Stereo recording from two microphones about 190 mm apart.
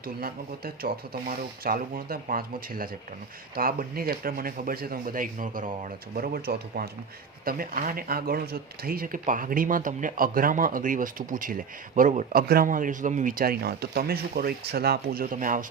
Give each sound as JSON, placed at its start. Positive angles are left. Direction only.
{"t": 0.2, "sound": "speech", "side_deg": -50}